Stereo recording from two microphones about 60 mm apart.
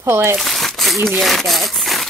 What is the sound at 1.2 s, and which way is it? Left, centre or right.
Speech, centre.